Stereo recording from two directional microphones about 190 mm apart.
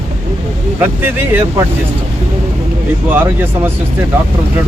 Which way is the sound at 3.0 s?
10° right (ahead or behind).